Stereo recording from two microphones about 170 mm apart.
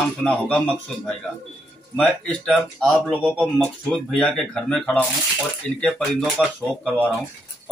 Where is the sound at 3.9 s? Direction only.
5° left (ahead or behind).